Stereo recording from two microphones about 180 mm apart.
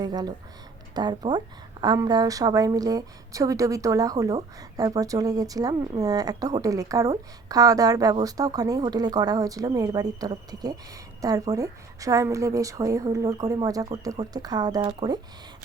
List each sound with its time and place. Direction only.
0.0 s speech: 20° right (ahead or behind)